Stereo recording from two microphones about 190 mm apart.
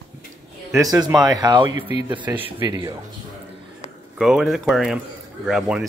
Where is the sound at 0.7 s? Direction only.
15° right (ahead or behind).